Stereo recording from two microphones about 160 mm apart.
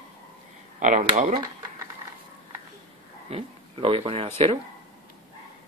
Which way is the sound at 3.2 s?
35° right (ahead or behind).